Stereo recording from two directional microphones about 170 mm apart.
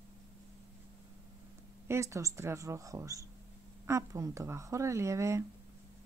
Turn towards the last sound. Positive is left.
turn(degrees=-15)  # may be behind; listen again after turning